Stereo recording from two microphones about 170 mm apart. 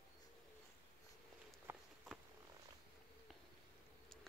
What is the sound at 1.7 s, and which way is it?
Walk, 15° right (ahead or behind).